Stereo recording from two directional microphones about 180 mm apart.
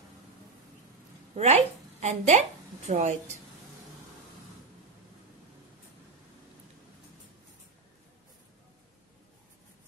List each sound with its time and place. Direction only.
1.3 s a woman's voice: 35° right (ahead or behind)